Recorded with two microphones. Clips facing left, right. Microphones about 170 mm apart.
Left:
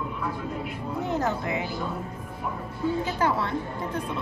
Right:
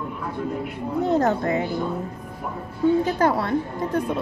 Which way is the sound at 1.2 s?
50° right (ahead or behind).